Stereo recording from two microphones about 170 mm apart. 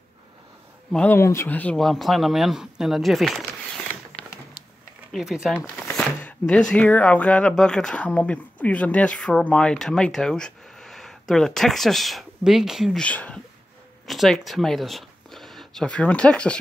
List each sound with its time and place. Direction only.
0.9 s speech: 10° left (ahead or behind)